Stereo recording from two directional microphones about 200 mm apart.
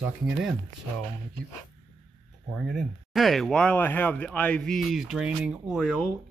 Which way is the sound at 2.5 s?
Centre (ahead or behind).